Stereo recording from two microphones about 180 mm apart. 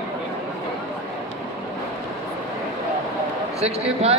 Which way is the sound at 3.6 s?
35° right (ahead or behind).